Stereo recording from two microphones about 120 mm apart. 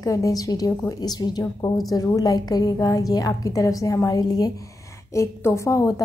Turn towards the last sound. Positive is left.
turn(degrees=25)  # may be behind; listen again after turning